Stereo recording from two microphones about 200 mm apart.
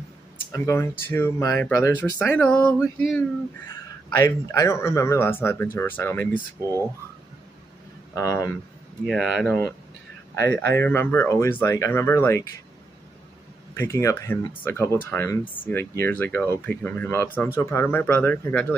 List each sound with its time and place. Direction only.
0.5 s speech: 15° left (ahead or behind)
4.2 s speech: 15° left (ahead or behind)
8.1 s speech: 15° left (ahead or behind)
9.0 s speech: centre (ahead or behind)
10.4 s speech: 55° right (ahead or behind)
10.8 s speech: 10° left (ahead or behind)
13.7 s speech: 15° left (ahead or behind)